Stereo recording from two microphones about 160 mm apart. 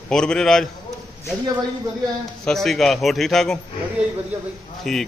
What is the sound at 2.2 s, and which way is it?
Mantra, centre (ahead or behind).